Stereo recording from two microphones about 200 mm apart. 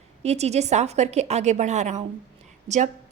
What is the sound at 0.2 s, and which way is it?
A woman's voice, 35° right (ahead or behind).